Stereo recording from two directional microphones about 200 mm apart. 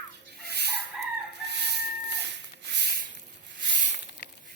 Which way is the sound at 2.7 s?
55° right (ahead or behind).